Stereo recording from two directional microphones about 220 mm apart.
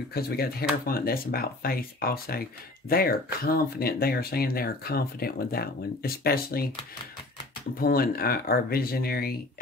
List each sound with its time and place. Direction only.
0.1 s speech: 45° left (ahead or behind)
7.8 s speech: 40° left (ahead or behind)